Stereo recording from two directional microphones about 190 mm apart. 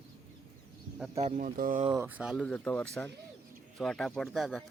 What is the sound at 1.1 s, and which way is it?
Speech, 40° right (ahead or behind).